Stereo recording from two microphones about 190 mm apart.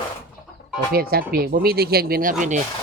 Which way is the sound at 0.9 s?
50° right (ahead or behind).